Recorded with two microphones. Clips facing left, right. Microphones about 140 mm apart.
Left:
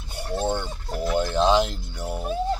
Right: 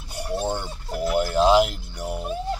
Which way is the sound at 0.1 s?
10° right (ahead or behind).